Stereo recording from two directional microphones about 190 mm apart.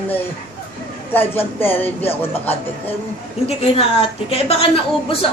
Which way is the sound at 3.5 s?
30° left (ahead or behind).